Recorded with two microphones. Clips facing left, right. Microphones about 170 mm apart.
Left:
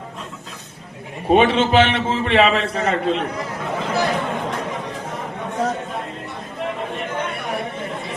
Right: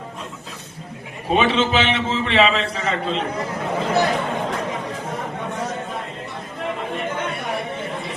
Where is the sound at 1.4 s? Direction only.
55° left (ahead or behind).